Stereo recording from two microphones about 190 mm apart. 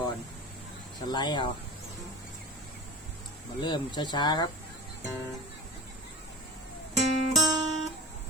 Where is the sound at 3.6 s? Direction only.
25° left (ahead or behind).